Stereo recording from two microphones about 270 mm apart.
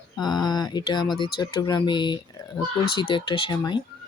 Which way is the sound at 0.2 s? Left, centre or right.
Centre.